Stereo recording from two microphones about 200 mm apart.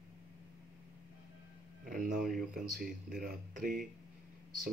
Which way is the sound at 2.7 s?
45° right (ahead or behind).